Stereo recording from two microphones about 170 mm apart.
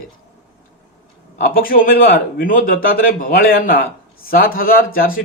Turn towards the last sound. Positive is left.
turn(degrees=55)  # may be behind; listen again after turning